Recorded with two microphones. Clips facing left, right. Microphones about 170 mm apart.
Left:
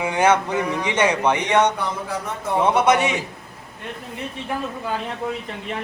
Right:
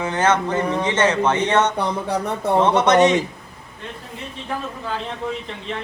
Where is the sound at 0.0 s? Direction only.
10° left (ahead or behind).